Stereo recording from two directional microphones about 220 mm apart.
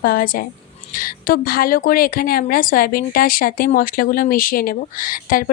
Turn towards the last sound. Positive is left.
turn(degrees=40)  # may be behind; listen again after turning